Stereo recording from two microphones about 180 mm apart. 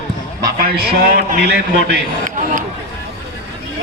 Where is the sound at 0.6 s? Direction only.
55° right (ahead or behind).